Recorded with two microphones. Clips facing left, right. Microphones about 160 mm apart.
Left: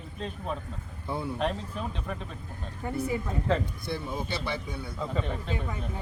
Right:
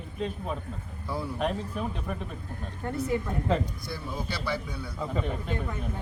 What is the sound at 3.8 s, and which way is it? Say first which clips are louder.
Speech: left 2 dB; 25° left (ahead or behind).